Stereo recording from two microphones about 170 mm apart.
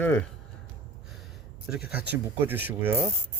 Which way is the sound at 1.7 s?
5° right (ahead or behind).